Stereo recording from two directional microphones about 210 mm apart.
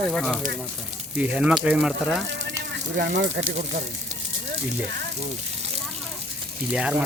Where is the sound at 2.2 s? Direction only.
60° right (ahead or behind).